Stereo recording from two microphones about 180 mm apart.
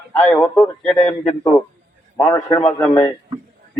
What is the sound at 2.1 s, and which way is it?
Speech, 15° left (ahead or behind).